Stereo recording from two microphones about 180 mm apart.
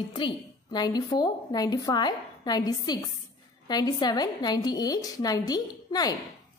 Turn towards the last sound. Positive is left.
turn(degrees=20)  # may be behind; listen again after turning